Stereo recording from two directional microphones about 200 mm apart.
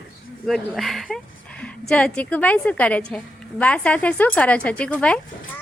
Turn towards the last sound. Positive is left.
turn(degrees=5)  # may be behind; listen again after turning